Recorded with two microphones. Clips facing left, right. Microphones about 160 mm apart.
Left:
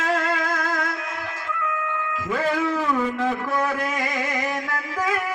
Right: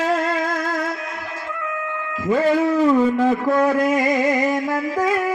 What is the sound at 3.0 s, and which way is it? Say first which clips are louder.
Music: right 7 dB; 40° right (ahead or behind).